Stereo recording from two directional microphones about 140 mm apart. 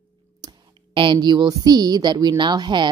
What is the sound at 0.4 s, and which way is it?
A woman's voice, 35° right (ahead or behind).